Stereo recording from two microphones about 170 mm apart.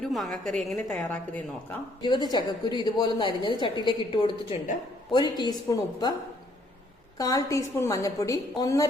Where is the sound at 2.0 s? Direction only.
25° left (ahead or behind).